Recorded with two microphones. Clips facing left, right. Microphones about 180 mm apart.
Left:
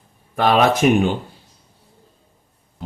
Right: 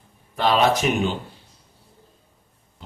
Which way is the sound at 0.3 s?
55° left (ahead or behind).